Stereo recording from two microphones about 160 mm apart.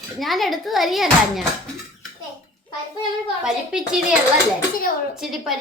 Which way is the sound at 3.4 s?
5° right (ahead or behind).